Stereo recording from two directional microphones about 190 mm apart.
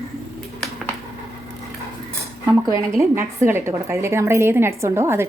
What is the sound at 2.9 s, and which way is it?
A woman's voice, 15° right (ahead or behind).